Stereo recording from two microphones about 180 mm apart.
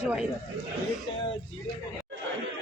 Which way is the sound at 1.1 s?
30° left (ahead or behind).